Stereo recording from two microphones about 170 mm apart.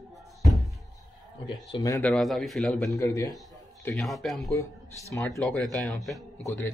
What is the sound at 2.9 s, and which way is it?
Speech, 20° left (ahead or behind).